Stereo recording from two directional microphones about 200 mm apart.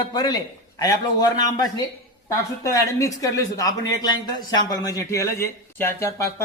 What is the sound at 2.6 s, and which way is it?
Speech, 15° left (ahead or behind).